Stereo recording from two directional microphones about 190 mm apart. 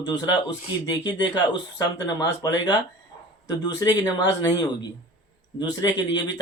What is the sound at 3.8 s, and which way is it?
Speech, 20° left (ahead or behind).